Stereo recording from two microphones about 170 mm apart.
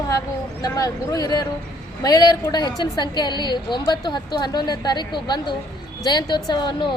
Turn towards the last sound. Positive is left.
turn(degrees=25)  # may be behind; listen again after turning